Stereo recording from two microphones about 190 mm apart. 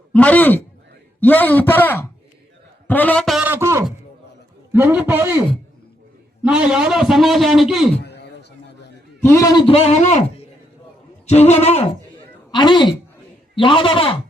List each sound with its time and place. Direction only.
0.1 s a man's voice: 10° left (ahead or behind)
2.8 s a sound: 10° left (ahead or behind); by 3.8 s 15° right (ahead or behind)
4.7 s a man's voice: 10° right (ahead or behind)
6.4 s a man's voice: 5° right (ahead or behind)
8.0 s a sound: 60° left (ahead or behind)
9.2 s a man's voice: 15° left (ahead or behind)
9.6 s speech: 35° left (ahead or behind)
12.5 s a woman's voice: 25° left (ahead or behind)